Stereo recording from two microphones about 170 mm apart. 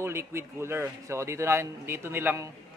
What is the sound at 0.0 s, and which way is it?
A man's voice, 15° right (ahead or behind).